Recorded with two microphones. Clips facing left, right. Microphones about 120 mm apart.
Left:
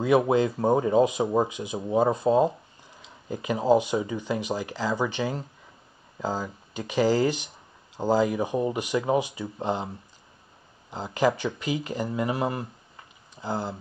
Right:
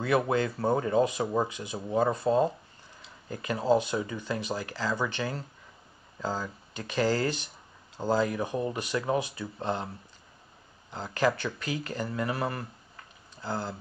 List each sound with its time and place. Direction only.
0.0 s speech: 15° left (ahead or behind)